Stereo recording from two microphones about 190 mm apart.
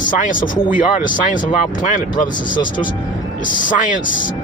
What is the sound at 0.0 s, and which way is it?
Speech, 45° left (ahead or behind).